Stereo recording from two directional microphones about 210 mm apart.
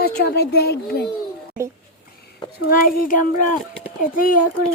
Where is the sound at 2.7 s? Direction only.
45° left (ahead or behind).